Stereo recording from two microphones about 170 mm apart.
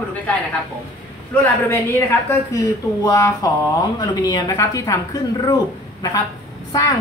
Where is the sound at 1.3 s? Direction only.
15° left (ahead or behind).